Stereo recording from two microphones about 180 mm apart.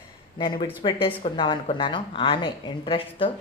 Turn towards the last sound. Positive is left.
turn(degrees=30)  # may be behind; listen again after turning